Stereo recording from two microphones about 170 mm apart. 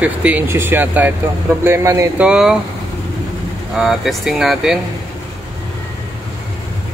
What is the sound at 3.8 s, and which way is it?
Speech, centre (ahead or behind).